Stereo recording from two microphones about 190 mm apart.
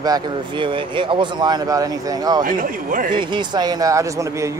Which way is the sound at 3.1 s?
25° right (ahead or behind).